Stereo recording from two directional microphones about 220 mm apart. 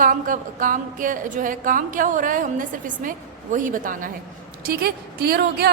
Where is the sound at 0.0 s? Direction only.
40° right (ahead or behind).